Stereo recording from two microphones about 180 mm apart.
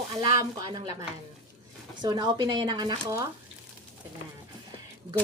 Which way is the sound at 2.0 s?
20° right (ahead or behind).